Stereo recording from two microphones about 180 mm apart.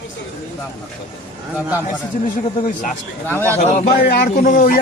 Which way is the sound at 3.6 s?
50° left (ahead or behind).